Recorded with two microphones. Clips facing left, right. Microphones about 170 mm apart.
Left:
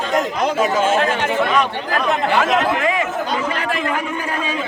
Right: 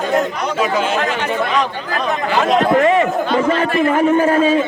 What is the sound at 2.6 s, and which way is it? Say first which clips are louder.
A man's voice: right 6 dB; 40° right (ahead or behind).